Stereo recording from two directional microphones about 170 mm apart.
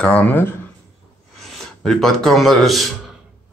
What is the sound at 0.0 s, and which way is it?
Speech, 10° left (ahead or behind).